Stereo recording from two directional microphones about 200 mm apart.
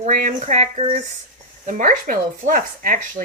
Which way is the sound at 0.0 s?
40° right (ahead or behind).